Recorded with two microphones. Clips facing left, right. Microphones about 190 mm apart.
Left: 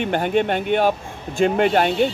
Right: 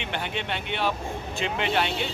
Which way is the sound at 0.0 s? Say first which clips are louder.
Left 12 dB; 45° left (ahead or behind).